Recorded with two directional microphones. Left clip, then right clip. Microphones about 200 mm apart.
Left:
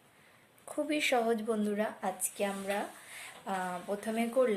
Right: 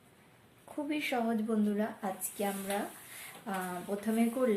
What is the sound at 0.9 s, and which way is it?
A woman's voice, 45° left (ahead or behind).